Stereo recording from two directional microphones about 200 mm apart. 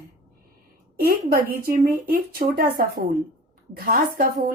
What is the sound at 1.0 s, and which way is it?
A woman's voice, 50° right (ahead or behind).